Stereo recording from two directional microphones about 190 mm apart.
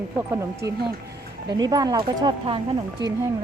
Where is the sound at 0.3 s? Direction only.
15° right (ahead or behind).